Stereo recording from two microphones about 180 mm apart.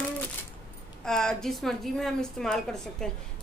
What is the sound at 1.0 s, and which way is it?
A woman's voice, centre (ahead or behind).